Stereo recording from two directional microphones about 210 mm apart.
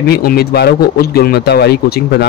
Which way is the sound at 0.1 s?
45° left (ahead or behind).